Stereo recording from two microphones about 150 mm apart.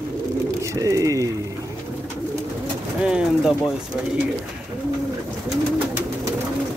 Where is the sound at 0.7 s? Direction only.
20° right (ahead or behind).